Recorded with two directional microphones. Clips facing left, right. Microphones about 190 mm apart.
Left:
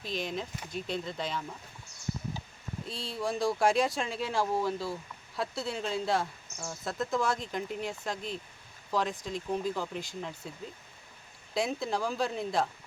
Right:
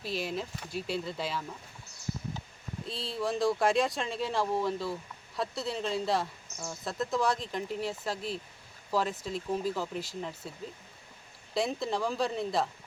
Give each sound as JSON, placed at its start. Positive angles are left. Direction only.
{"t": 0.0, "sound": "speech", "side_deg": -5}
{"t": 2.8, "sound": "speech", "side_deg": 0}
{"t": 11.5, "sound": "speech", "side_deg": 0}